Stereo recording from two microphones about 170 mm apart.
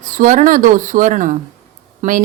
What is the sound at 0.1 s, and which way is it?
A woman's voice, 50° right (ahead or behind).